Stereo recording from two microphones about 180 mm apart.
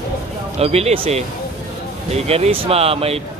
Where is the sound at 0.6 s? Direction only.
35° right (ahead or behind).